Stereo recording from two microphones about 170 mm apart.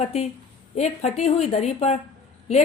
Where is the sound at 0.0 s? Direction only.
40° left (ahead or behind).